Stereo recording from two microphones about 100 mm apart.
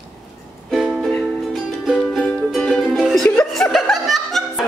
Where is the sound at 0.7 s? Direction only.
5° right (ahead or behind).